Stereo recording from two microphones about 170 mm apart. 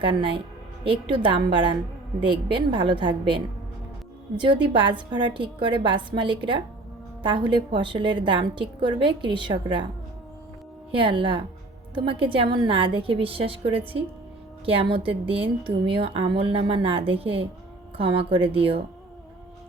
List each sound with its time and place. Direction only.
0.0 s a woman's voice: 30° right (ahead or behind)
10.9 s a woman's voice: 30° right (ahead or behind)